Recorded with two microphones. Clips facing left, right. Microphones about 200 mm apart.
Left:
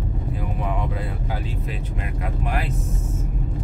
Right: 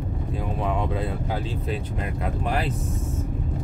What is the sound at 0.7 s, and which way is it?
Speech, 25° right (ahead or behind).